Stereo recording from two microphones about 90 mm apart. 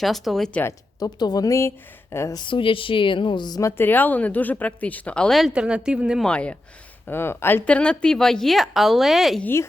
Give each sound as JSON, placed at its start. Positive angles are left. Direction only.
{"t": 0.0, "sound": "a woman's voice", "side_deg": 0}
{"t": 0.9, "sound": "speech", "side_deg": 45}
{"t": 2.3, "sound": "a woman's voice", "side_deg": 60}
{"t": 3.6, "sound": "speech", "side_deg": 30}
{"t": 5.5, "sound": "a woman's voice", "side_deg": -10}
{"t": 6.2, "sound": "speech", "side_deg": 10}
{"t": 7.1, "sound": "speech", "side_deg": 25}
{"t": 7.6, "sound": "a woman's voice", "side_deg": 15}
{"t": 9.4, "sound": "speech", "side_deg": 25}